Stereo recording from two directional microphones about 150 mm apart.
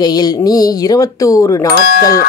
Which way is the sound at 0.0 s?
25° left (ahead or behind).